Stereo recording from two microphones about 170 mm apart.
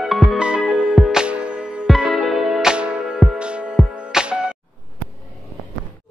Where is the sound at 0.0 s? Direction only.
Centre (ahead or behind).